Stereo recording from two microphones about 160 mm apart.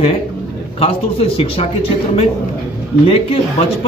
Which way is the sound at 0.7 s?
40° left (ahead or behind).